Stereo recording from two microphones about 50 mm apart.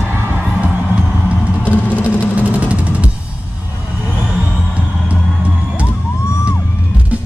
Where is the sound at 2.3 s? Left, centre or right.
Right.